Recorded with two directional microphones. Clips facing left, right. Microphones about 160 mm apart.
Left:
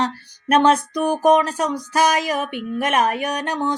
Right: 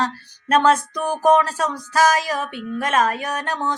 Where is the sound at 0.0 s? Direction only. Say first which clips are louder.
Left 1 dB; 20° left (ahead or behind).